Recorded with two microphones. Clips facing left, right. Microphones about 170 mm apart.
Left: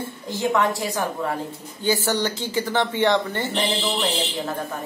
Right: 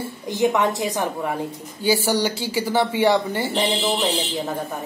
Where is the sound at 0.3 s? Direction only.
20° right (ahead or behind).